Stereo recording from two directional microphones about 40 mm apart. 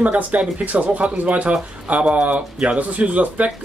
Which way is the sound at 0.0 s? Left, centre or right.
Right.